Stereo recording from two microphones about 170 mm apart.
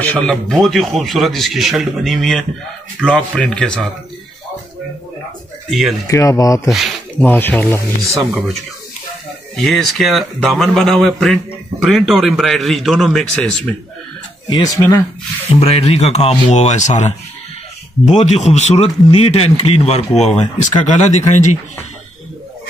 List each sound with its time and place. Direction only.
0.0 s speech: 5° left (ahead or behind)
5.7 s speech: centre (ahead or behind)
6.0 s speech: 20° left (ahead or behind)
6.7 s speech: centre (ahead or behind)
7.2 s speech: 10° left (ahead or behind)
9.6 s speech: centre (ahead or behind)
14.5 s speech: 20° left (ahead or behind)
15.6 s a man's voice: 35° left (ahead or behind)